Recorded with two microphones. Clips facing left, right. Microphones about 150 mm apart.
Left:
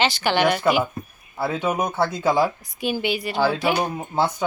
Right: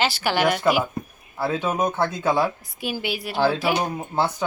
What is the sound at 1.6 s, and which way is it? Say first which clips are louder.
Speech: left 1 dB; 15° left (ahead or behind).